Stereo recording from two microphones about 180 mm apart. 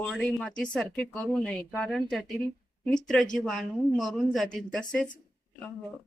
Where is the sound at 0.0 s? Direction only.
5° left (ahead or behind).